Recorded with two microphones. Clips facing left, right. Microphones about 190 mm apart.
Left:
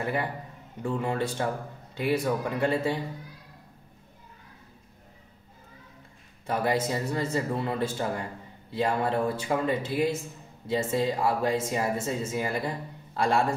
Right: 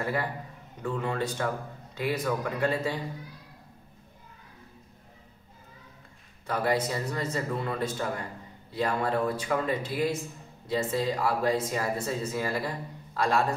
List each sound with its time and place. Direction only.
0.0 s speech: 20° left (ahead or behind)
6.4 s speech: 25° left (ahead or behind)